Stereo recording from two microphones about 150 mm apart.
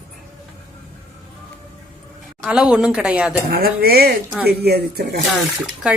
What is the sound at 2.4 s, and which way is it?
Speech, 5° right (ahead or behind).